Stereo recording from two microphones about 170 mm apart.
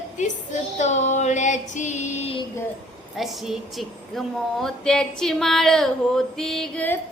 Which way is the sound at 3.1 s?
Centre (ahead or behind).